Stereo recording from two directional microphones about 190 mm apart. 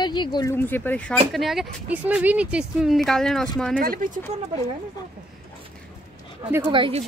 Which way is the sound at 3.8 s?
50° right (ahead or behind).